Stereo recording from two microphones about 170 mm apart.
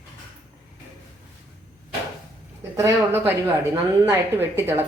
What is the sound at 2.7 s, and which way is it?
Speech, 15° right (ahead or behind).